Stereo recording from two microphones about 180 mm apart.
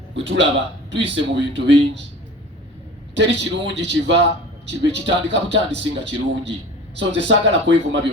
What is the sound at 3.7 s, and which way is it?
A man's voice, 75° right (ahead or behind).